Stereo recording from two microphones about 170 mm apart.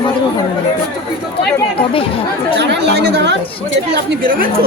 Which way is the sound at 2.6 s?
90° right.